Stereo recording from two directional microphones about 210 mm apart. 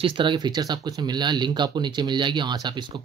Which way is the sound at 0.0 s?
25° right (ahead or behind).